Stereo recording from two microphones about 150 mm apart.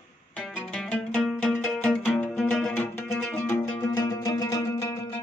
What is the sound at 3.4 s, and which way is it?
Music, 20° left (ahead or behind).